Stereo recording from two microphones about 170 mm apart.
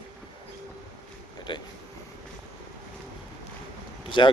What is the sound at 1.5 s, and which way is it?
Speech, 25° left (ahead or behind).